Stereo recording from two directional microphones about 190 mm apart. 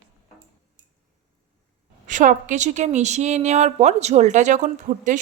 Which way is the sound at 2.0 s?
40° right (ahead or behind).